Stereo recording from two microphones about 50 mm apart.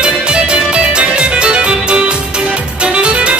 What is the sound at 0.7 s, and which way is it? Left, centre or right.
Music, right.